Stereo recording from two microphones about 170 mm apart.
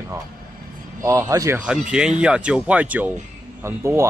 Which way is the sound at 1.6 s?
5° right (ahead or behind).